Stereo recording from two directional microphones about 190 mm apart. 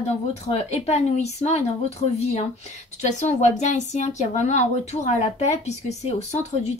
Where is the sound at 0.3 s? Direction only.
35° left (ahead or behind).